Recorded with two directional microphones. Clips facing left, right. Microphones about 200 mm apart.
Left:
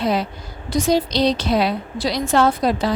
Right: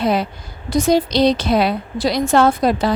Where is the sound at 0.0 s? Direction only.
55° right (ahead or behind).